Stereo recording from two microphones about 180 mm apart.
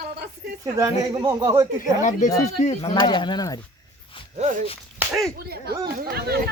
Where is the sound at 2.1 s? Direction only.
40° left (ahead or behind).